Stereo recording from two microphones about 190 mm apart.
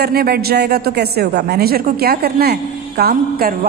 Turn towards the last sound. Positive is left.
turn(degrees=-55)  # may be behind; listen again after turning